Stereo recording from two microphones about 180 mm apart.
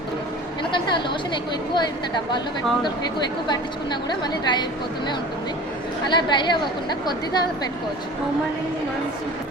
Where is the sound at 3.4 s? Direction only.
25° left (ahead or behind).